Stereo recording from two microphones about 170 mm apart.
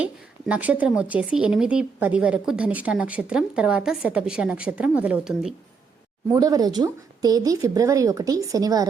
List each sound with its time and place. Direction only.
0.0 s speech: 10° right (ahead or behind)
6.2 s speech: 20° right (ahead or behind)